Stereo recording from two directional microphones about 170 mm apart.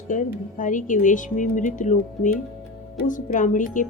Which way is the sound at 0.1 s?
50° left (ahead or behind).